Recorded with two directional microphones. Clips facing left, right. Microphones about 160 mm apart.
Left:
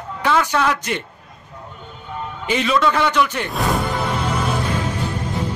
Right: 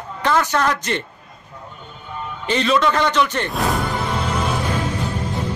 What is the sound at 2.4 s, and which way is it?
A man's voice, 10° left (ahead or behind).